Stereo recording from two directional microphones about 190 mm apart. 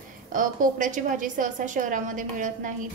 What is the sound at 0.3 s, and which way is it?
A woman's voice, 45° right (ahead or behind).